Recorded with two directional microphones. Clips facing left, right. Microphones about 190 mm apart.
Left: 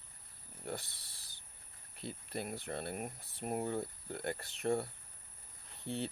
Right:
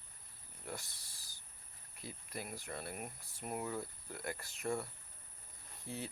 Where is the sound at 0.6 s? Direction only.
30° left (ahead or behind).